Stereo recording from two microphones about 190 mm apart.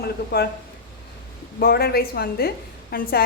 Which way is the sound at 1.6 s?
55° left (ahead or behind).